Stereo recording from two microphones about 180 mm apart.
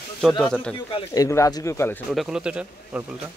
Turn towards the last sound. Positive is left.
turn(degrees=-5)  # may be behind; listen again after turning